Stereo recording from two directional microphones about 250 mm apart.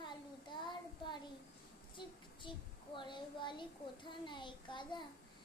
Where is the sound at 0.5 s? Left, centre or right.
Centre.